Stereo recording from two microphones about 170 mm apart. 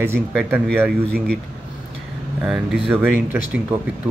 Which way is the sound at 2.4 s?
5° right (ahead or behind).